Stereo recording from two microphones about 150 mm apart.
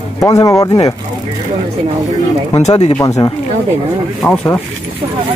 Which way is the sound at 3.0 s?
20° left (ahead or behind).